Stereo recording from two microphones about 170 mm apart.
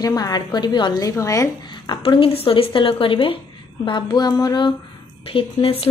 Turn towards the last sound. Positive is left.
turn(degrees=30)  # may be behind; listen again after turning